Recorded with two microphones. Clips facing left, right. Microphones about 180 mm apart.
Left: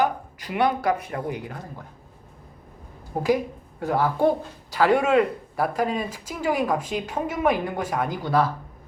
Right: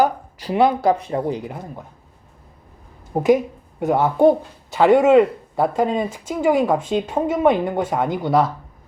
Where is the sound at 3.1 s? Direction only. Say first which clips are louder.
Right 6 dB; 20° right (ahead or behind).